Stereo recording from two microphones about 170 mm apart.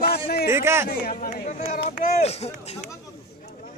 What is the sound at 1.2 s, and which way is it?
Chatter, 50° left (ahead or behind).